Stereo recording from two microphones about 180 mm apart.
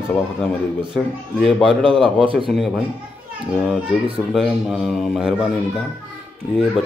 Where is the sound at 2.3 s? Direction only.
Centre (ahead or behind).